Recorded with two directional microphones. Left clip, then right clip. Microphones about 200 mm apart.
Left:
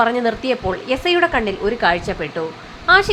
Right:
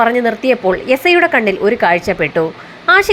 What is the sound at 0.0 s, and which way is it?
Speech, 10° right (ahead or behind).